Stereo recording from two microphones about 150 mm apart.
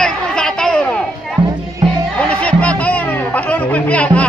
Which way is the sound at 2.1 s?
10° left (ahead or behind).